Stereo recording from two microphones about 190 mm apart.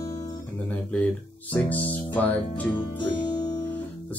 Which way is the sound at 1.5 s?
10° left (ahead or behind).